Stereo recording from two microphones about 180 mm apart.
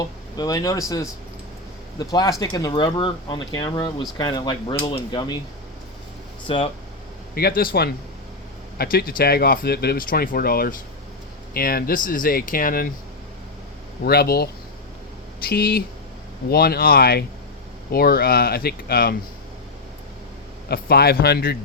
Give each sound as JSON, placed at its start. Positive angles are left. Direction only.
{"t": 0.3, "sound": "speech", "side_deg": 20}
{"t": 6.5, "sound": "speech", "side_deg": 30}
{"t": 7.3, "sound": "speech", "side_deg": 55}
{"t": 14.0, "sound": "speech", "side_deg": 60}
{"t": 20.7, "sound": "speech", "side_deg": 60}